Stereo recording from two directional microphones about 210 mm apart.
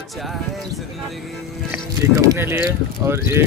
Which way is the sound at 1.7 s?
15° right (ahead or behind).